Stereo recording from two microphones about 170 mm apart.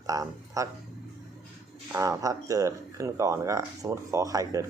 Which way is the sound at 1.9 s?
20° right (ahead or behind).